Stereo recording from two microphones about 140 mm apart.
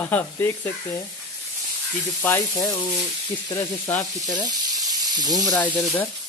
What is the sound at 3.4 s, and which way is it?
Sizzle, 25° left (ahead or behind).